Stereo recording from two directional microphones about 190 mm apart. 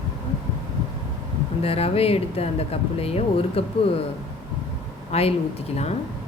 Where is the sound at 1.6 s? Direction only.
30° left (ahead or behind).